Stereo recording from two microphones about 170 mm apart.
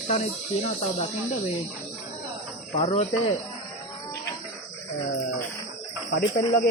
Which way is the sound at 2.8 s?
35° left (ahead or behind).